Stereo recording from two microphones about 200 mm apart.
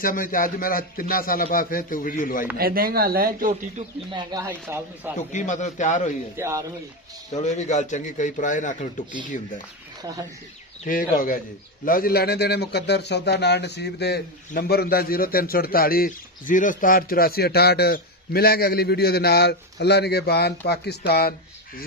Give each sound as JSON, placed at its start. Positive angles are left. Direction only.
{"t": 0.0, "sound": "a man's voice", "side_deg": 45}
{"t": 2.5, "sound": "speech", "side_deg": -50}
{"t": 4.1, "sound": "speech", "side_deg": -20}
{"t": 5.3, "sound": "a man's voice", "side_deg": 40}
{"t": 6.3, "sound": "speech", "side_deg": -15}
{"t": 7.3, "sound": "a man's voice", "side_deg": 35}
{"t": 10.8, "sound": "a man's voice", "side_deg": 45}